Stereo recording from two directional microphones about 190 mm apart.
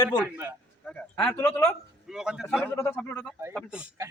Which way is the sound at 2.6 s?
10° left (ahead or behind).